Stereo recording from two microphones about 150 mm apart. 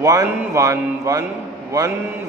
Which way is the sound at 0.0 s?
20° right (ahead or behind).